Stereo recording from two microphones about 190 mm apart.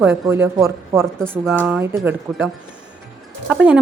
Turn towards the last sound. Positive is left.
turn(degrees=-5)  # may be behind; listen again after turning